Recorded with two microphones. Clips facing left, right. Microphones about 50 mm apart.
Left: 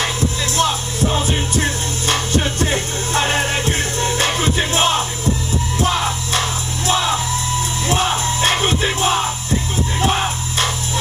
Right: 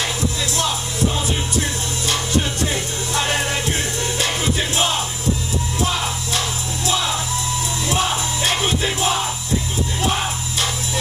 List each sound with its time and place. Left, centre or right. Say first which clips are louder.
1.1 s music: left 3 dB; left
7.9 s music: left 3 dB; left